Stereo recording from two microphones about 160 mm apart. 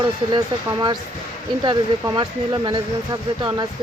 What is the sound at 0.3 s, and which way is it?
Speech, 25° right (ahead or behind).